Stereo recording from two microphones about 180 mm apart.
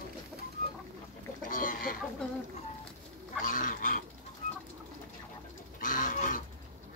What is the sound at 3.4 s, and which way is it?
Dog, 50° left (ahead or behind).